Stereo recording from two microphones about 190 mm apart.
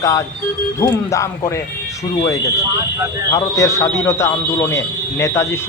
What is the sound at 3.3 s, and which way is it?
Speech, 15° left (ahead or behind).